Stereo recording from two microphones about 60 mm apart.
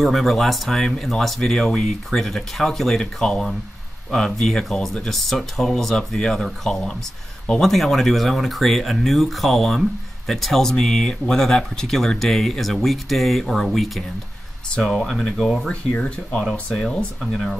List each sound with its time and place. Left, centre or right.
0.0 s speech: centre
15.7 s speech: centre
17.2 s speech: centre